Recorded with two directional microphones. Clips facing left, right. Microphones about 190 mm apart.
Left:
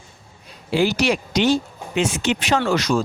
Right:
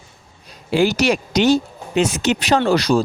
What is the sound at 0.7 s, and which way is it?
Speech, 45° right (ahead or behind).